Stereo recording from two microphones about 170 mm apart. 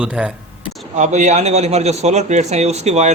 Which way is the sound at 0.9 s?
45° right (ahead or behind).